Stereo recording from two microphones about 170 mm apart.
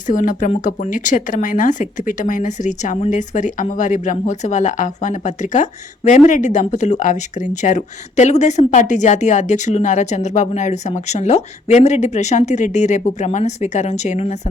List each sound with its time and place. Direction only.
0.1 s speech: 50° left (ahead or behind)